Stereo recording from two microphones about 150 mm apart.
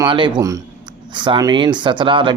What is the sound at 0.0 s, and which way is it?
Speech, 30° right (ahead or behind).